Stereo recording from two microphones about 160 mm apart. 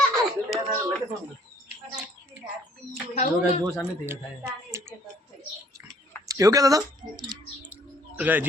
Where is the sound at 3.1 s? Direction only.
40° left (ahead or behind).